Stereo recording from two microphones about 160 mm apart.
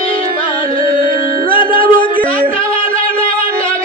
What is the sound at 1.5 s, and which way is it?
Music, 65° right (ahead or behind).